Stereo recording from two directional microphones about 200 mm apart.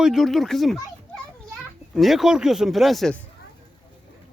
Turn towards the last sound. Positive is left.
turn(degrees=0)  # may be behind; listen again after turning